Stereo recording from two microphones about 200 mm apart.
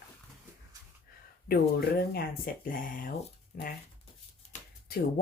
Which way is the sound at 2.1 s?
50° left (ahead or behind).